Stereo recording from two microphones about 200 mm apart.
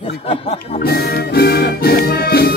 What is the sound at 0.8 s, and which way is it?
Music, 50° left (ahead or behind).